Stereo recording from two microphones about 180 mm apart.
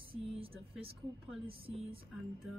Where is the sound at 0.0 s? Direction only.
30° right (ahead or behind).